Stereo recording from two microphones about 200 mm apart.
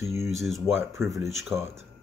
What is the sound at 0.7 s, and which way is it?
Speech, 10° right (ahead or behind).